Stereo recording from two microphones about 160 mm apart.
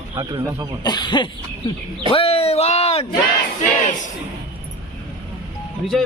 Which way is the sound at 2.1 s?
35° left (ahead or behind).